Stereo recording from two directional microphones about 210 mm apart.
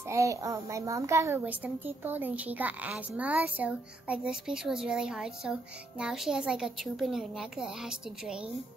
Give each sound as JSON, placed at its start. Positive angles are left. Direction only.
{"t": 0.0, "sound": "a child's voice", "side_deg": -15}